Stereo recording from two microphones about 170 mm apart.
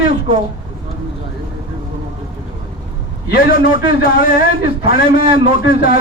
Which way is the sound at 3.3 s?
55° left (ahead or behind).